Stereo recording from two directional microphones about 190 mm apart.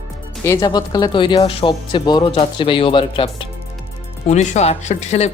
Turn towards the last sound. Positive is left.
turn(degrees=35)  # may be behind; listen again after turning